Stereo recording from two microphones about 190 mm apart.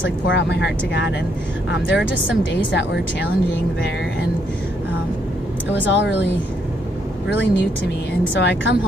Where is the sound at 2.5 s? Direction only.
70° left (ahead or behind).